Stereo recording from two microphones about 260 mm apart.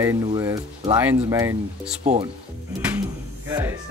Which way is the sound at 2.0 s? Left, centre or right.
Right.